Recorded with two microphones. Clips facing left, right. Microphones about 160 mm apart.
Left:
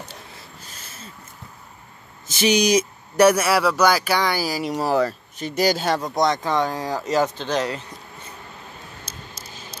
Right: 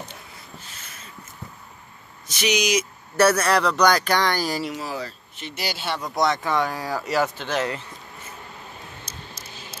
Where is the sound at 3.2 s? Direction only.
10° left (ahead or behind).